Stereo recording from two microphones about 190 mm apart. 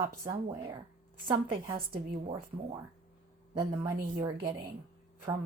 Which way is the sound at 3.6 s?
20° right (ahead or behind).